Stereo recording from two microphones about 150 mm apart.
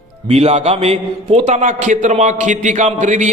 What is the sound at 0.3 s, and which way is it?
A man's voice, 45° right (ahead or behind).